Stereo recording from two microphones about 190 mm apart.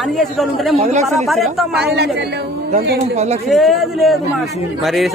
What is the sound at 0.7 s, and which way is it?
Speech, 35° right (ahead or behind).